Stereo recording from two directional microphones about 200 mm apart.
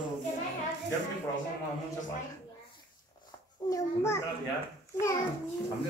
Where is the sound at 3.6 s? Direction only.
20° left (ahead or behind).